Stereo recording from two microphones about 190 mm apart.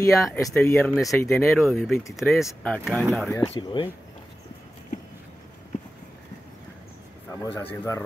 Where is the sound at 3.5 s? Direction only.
25° left (ahead or behind).